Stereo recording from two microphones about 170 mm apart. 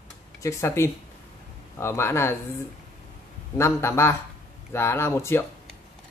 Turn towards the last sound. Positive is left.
turn(degrees=15)  # may be behind; listen again after turning